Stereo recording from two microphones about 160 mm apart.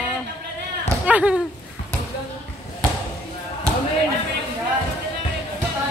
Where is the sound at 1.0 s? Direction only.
10° right (ahead or behind).